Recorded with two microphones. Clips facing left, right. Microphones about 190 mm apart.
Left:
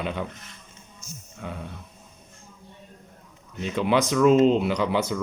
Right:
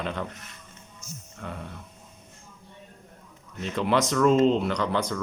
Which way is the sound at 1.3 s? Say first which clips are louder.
Left 2 dB; 5° left (ahead or behind).